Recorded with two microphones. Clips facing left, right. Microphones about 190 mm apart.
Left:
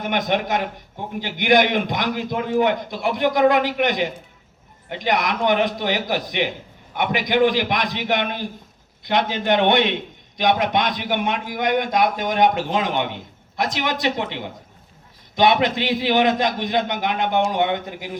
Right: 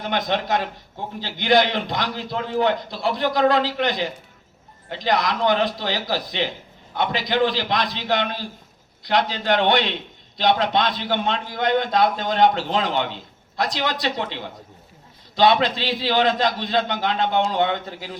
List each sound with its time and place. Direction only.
0.0 s a man's voice: 20° left (ahead or behind)